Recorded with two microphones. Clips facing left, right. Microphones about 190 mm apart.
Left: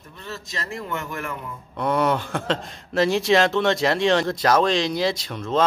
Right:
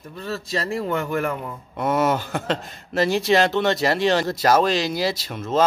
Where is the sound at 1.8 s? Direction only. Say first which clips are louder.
Right 1 dB; 5° right (ahead or behind).